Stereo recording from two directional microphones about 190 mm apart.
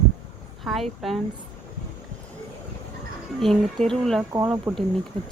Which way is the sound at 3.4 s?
Centre (ahead or behind).